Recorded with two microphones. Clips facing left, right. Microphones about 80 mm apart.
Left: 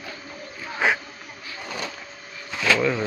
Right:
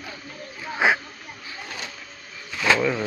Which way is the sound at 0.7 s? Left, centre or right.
Centre.